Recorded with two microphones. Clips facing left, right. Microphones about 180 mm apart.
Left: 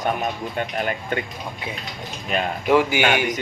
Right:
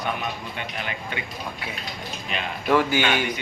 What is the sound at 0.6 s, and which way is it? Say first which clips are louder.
Speech: left 7 dB; 45° left (ahead or behind).